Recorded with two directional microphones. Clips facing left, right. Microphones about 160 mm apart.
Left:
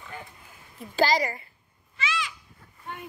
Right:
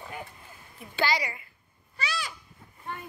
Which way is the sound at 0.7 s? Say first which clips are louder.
Left 5 dB; 40° left (ahead or behind).